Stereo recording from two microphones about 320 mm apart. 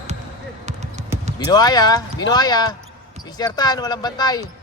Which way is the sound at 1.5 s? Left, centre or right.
Centre.